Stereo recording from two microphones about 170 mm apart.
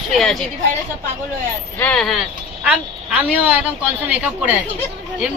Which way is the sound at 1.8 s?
5° left (ahead or behind).